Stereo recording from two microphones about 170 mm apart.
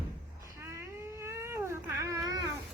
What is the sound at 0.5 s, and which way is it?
Baby cry, 15° right (ahead or behind).